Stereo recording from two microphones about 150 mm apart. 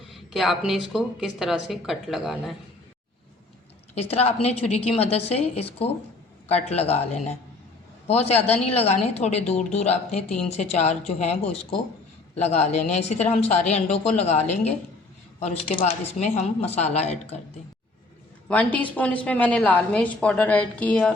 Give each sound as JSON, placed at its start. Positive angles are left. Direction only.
{"t": 0.1, "sound": "a woman's voice", "side_deg": 0}
{"t": 3.9, "sound": "a woman's voice", "side_deg": 45}
{"t": 10.2, "sound": "a woman's voice", "side_deg": 5}
{"t": 10.6, "sound": "speech", "side_deg": 45}
{"t": 18.4, "sound": "a woman's voice", "side_deg": 10}